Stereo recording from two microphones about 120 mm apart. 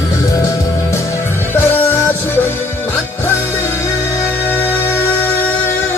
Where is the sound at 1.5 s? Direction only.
15° left (ahead or behind).